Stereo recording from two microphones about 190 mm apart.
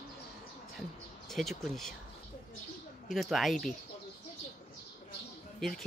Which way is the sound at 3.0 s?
Centre (ahead or behind).